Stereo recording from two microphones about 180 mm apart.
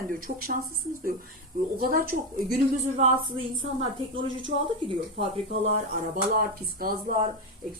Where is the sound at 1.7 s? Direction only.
55° right (ahead or behind).